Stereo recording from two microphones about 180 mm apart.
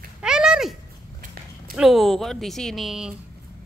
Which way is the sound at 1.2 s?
50° right (ahead or behind).